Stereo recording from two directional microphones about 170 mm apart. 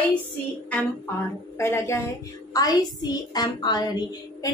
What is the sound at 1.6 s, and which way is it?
A woman's voice, 15° left (ahead or behind).